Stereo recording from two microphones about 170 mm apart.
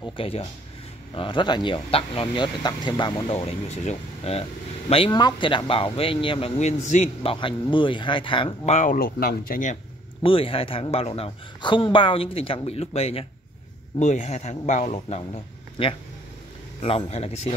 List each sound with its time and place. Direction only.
0.0 s speech: 35° left (ahead or behind)
3.3 s speech: 35° left (ahead or behind)
7.7 s speech: 30° left (ahead or behind)
8.9 s speech: 60° left (ahead or behind)
10.2 s a man's voice: 35° left (ahead or behind)